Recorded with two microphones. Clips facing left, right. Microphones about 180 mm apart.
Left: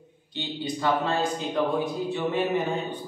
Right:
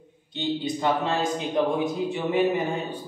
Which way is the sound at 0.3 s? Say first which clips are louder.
Right 4 dB; 20° right (ahead or behind).